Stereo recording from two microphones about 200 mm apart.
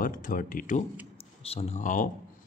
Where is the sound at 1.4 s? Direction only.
30° left (ahead or behind).